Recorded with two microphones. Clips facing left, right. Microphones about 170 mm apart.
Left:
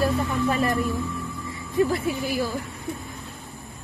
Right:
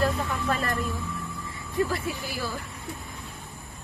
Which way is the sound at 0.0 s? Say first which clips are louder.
Left 4 dB; 10° left (ahead or behind).